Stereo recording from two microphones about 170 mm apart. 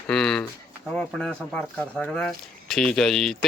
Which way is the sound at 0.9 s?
5° left (ahead or behind).